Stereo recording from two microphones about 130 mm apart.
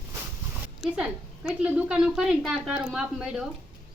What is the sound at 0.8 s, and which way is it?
A woman's voice, 10° right (ahead or behind).